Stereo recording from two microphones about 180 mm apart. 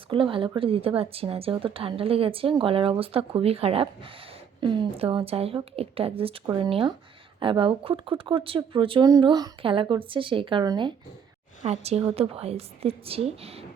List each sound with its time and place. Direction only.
0.1 s a woman's voice: 30° right (ahead or behind)
11.6 s a woman's voice: 35° right (ahead or behind)